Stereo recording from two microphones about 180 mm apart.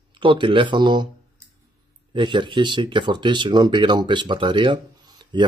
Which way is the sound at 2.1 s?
25° right (ahead or behind).